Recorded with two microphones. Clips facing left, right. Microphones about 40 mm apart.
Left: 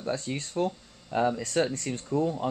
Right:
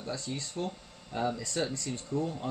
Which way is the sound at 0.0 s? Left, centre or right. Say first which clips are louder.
Left 5 dB; left.